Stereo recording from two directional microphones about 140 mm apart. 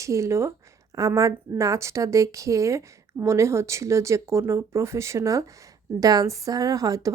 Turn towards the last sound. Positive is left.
turn(degrees=-25)  # may be behind; listen again after turning